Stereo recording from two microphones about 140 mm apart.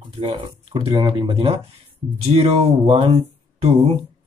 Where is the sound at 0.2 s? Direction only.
40° right (ahead or behind).